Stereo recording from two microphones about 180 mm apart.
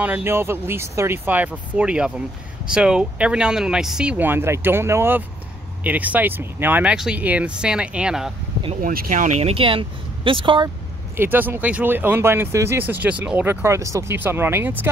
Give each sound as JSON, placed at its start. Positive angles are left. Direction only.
{"t": 0.0, "sound": "speech", "side_deg": -10}
{"t": 8.8, "sound": "speech", "side_deg": -50}
{"t": 11.1, "sound": "speech", "side_deg": -10}